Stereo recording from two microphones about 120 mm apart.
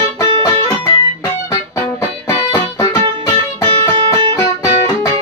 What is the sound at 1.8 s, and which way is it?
Music, 15° left (ahead or behind).